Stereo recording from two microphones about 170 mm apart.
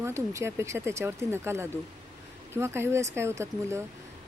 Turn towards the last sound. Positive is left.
turn(degrees=-15)  # may be behind; listen again after turning